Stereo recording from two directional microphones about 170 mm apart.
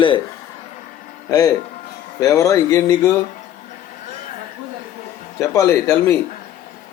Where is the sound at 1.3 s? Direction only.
20° left (ahead or behind).